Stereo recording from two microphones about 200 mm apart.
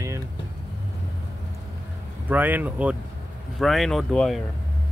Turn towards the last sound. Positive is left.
turn(degrees=0)  # may be behind; listen again after turning